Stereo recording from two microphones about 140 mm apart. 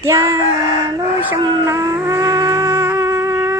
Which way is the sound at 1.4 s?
30° right (ahead or behind).